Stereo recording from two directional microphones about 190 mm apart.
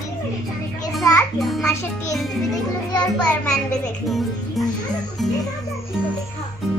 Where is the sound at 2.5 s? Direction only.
20° left (ahead or behind).